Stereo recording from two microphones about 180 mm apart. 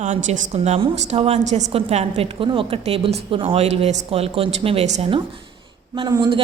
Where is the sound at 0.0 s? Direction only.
40° right (ahead or behind).